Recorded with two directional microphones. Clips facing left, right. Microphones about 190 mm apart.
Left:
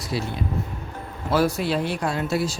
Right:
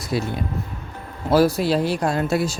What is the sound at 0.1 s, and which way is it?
Speech, 50° right (ahead or behind).